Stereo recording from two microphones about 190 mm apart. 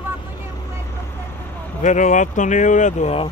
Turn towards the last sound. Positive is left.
turn(degrees=35)  # may be behind; listen again after turning